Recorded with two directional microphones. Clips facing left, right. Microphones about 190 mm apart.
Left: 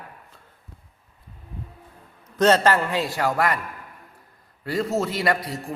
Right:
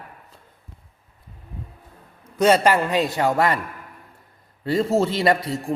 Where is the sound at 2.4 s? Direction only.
10° right (ahead or behind).